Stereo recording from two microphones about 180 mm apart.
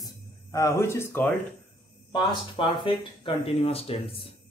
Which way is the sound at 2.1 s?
25° left (ahead or behind).